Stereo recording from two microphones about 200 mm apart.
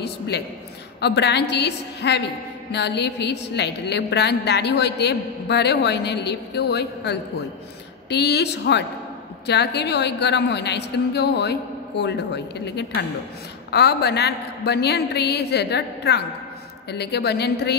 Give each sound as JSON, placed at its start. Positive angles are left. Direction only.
{"t": 0.3, "sound": "a woman's voice", "side_deg": 55}